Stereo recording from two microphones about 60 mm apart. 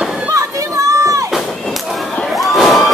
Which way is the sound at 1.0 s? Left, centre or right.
Right.